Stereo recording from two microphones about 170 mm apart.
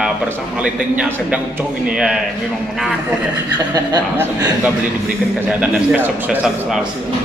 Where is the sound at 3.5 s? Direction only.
25° right (ahead or behind).